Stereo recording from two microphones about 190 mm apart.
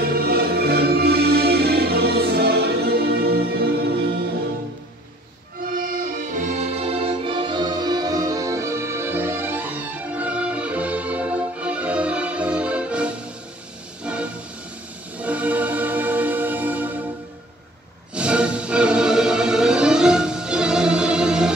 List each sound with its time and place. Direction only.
0.0 s music: 55° right (ahead or behind)
5.7 s music: 45° right (ahead or behind); by 17.0 s 10° right (ahead or behind)
18.1 s music: 5° right (ahead or behind)